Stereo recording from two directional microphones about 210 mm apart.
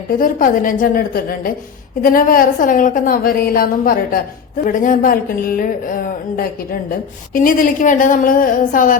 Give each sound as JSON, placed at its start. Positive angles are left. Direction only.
{"t": 0.2, "sound": "a woman's voice", "side_deg": 40}